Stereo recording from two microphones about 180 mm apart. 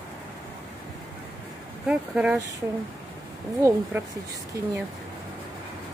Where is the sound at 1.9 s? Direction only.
5° right (ahead or behind).